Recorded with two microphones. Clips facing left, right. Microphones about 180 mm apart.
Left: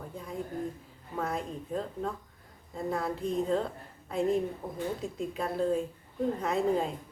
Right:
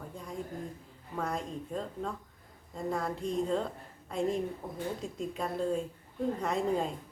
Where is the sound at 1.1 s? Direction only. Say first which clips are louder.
Left 1 dB; 5° left (ahead or behind).